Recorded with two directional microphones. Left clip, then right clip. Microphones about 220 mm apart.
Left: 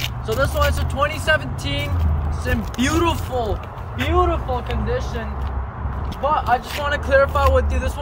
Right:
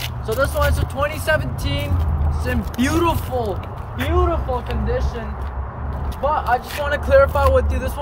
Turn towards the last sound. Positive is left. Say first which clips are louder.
# right 1 dB
turn(degrees=-10)  # may be behind; listen again after turning